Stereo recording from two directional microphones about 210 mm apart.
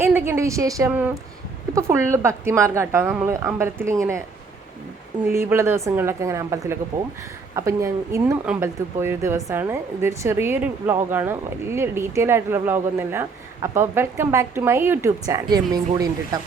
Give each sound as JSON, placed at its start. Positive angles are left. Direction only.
{"t": 0.0, "sound": "speech", "side_deg": -10}
{"t": 5.2, "sound": "speech", "side_deg": -10}